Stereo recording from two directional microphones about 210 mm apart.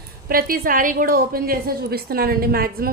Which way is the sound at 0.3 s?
45° right (ahead or behind).